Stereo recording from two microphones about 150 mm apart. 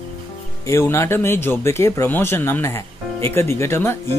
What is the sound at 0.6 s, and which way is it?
Speech, 15° left (ahead or behind).